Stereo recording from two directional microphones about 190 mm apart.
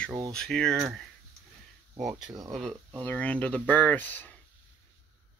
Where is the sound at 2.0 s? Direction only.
Centre (ahead or behind).